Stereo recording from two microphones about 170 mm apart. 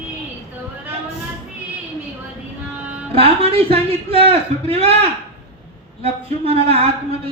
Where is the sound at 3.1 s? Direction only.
35° right (ahead or behind).